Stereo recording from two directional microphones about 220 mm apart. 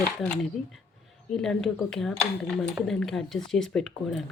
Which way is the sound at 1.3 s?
Centre (ahead or behind).